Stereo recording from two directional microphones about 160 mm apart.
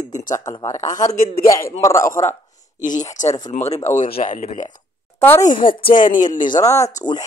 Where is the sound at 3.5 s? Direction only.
45° left (ahead or behind).